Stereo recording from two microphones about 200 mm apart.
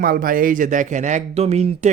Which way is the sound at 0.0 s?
45° right (ahead or behind).